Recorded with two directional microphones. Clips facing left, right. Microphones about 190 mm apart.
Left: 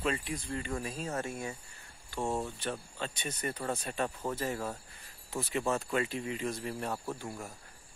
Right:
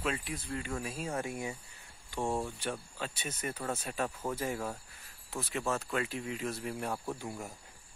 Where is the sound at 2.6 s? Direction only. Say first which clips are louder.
Left 1 dB; 10° right (ahead or behind).